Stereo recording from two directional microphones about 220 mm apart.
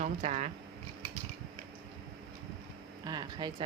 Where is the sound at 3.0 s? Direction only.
20° right (ahead or behind).